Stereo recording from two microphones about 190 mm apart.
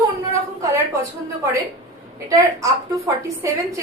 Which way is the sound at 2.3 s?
15° right (ahead or behind).